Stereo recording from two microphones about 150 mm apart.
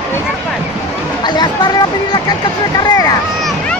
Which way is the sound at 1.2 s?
30° left (ahead or behind).